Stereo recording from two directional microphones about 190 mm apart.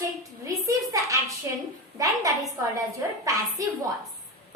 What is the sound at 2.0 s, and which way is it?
Speech, 15° right (ahead or behind).